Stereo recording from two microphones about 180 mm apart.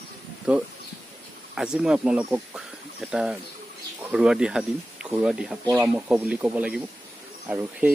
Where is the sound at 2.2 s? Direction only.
5° right (ahead or behind).